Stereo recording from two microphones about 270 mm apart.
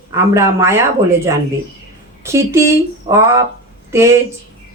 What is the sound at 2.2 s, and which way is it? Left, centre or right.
Speech, centre.